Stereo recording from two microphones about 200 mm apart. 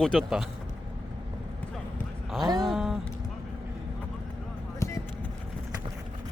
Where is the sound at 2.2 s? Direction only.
Centre (ahead or behind).